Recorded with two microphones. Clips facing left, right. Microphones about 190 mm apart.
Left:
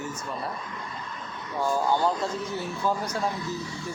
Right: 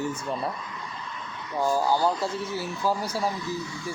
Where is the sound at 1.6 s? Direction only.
5° right (ahead or behind).